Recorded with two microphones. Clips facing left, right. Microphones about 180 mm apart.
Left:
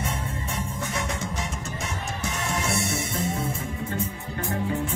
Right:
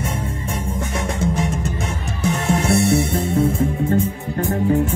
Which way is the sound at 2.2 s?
60° right (ahead or behind).